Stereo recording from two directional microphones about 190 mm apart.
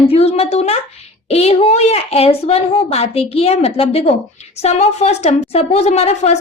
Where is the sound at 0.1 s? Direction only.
30° left (ahead or behind).